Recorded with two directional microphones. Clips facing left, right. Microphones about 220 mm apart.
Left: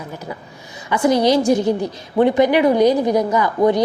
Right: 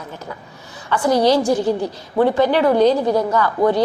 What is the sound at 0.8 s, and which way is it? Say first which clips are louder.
A woman's voice: even; 15° left (ahead or behind).